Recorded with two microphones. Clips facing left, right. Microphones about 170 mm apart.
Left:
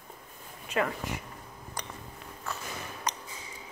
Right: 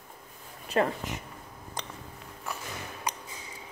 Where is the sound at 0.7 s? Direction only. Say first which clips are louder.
Right 3 dB; 35° right (ahead or behind).